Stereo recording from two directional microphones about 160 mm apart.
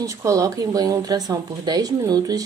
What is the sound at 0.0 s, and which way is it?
A woman's voice, 20° right (ahead or behind).